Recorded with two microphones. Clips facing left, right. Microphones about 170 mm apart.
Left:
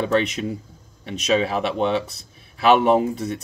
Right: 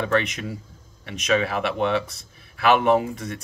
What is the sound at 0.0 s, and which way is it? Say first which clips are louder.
Speech: left 3 dB; 35° left (ahead or behind).